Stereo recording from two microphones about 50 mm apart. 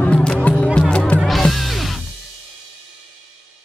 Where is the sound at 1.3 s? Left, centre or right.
Centre.